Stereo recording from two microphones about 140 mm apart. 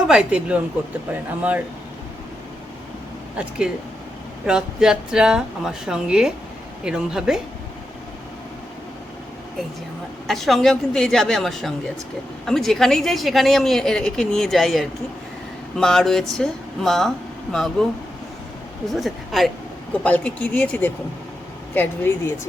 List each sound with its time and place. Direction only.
0.1 s speech: 5° right (ahead or behind)
4.4 s a woman's voice: 5° right (ahead or behind)
10.2 s a woman's voice: centre (ahead or behind)
18.9 s a woman's voice: centre (ahead or behind)